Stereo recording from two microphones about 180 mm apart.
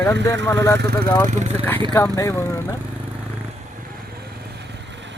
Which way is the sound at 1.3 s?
40° right (ahead or behind).